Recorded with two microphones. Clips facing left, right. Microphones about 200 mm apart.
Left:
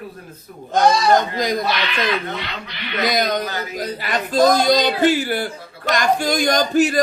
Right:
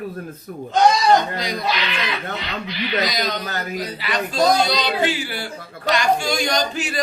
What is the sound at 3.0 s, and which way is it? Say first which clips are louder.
Speech: left 5 dB; 50° left (ahead or behind).